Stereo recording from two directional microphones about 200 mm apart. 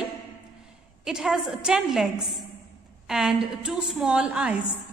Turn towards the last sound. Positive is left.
turn(degrees=-5)  # may be behind; listen again after turning